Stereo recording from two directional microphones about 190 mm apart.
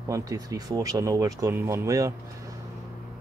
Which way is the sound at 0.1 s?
20° right (ahead or behind).